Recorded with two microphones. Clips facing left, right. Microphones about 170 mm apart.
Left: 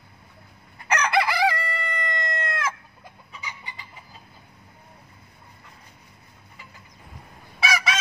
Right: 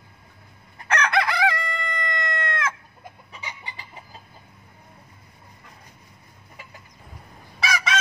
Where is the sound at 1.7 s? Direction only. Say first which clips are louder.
Even; 10° left (ahead or behind).